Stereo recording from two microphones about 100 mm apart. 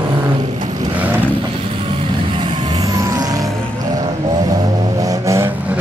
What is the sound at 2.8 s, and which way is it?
Vehicle, 35° right (ahead or behind).